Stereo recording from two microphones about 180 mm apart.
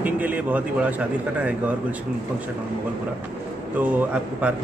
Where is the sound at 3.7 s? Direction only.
10° right (ahead or behind).